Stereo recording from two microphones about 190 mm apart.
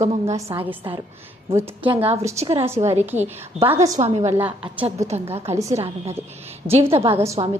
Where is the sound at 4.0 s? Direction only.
35° right (ahead or behind).